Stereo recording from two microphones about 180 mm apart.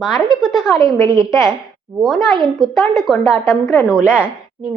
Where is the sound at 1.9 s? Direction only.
Centre (ahead or behind).